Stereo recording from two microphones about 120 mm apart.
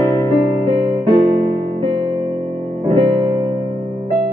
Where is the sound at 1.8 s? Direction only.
45° right (ahead or behind).